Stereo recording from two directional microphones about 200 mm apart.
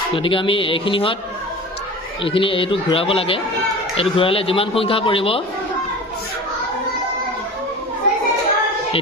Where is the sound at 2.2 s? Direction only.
25° left (ahead or behind).